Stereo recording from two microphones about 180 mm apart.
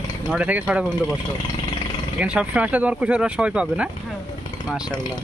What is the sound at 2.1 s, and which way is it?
Speech, 5° right (ahead or behind).